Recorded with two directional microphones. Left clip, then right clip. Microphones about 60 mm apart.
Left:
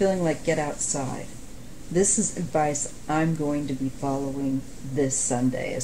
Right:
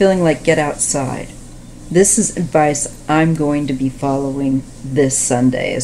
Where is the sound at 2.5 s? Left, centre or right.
Right.